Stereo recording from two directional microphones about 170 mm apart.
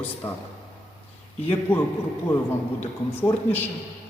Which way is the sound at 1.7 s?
10° left (ahead or behind).